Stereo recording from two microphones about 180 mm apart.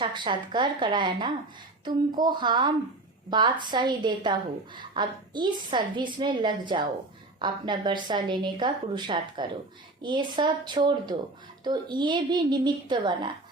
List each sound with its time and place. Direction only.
0.0 s a woman's voice: 25° right (ahead or behind)